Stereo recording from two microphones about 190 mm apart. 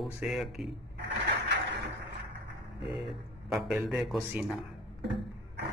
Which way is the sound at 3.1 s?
Centre (ahead or behind).